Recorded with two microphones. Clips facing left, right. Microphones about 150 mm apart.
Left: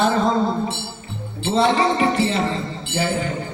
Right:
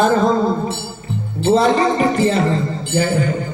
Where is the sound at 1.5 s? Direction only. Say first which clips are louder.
Right 2 dB; 40° right (ahead or behind).